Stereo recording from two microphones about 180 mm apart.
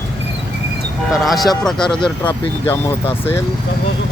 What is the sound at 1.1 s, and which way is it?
Speech, centre (ahead or behind).